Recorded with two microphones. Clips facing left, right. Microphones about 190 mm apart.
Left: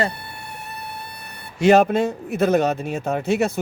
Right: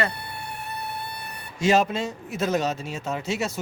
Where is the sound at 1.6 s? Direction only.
60° left (ahead or behind).